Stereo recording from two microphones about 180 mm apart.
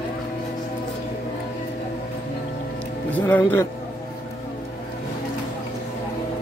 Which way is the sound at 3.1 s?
10° left (ahead or behind).